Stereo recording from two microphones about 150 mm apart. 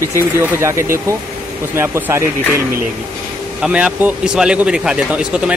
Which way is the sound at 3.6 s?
10° right (ahead or behind).